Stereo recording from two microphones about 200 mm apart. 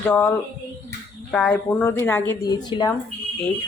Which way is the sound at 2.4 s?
20° left (ahead or behind).